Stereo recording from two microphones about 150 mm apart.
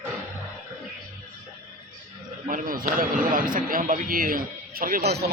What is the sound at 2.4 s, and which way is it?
Speech, 65° right (ahead or behind).